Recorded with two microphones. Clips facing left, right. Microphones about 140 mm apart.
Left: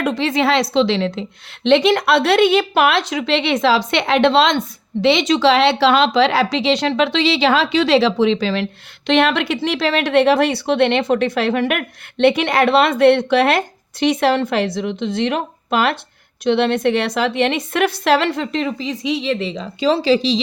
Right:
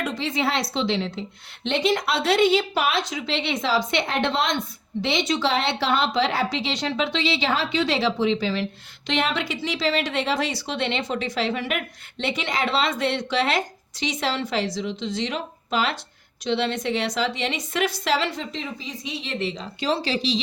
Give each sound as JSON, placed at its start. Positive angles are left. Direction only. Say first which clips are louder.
{"t": 0.0, "sound": "a woman's voice", "louder": "left 8 dB", "side_deg": 70}
{"t": 9.0, "sound": "a woman's voice", "louder": "left 9 dB", "side_deg": 65}